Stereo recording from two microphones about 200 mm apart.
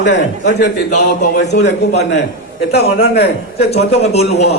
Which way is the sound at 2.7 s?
55° left (ahead or behind).